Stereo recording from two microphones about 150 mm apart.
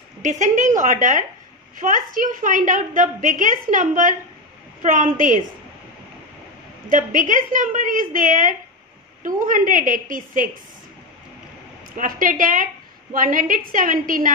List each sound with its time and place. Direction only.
0.2 s a woman's voice: 55° right (ahead or behind)
6.9 s a woman's voice: 60° right (ahead or behind)
12.0 s a woman's voice: 65° right (ahead or behind)